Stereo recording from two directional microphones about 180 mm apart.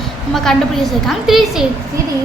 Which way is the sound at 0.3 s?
Centre (ahead or behind).